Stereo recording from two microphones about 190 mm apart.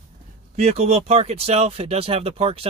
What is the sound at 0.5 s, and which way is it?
Speech, 35° right (ahead or behind).